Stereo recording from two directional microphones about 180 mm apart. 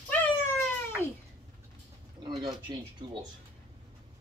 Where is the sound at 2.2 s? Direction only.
25° right (ahead or behind).